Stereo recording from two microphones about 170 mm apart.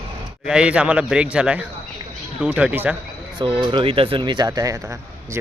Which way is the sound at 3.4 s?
30° right (ahead or behind).